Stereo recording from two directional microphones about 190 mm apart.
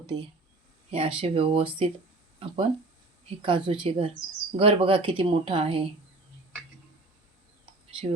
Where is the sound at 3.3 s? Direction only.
25° right (ahead or behind).